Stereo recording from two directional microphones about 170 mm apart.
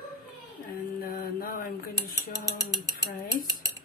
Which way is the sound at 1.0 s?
60° left (ahead or behind).